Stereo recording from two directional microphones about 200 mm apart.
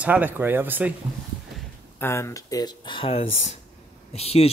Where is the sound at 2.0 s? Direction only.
15° left (ahead or behind); by 4.5 s 30° left (ahead or behind).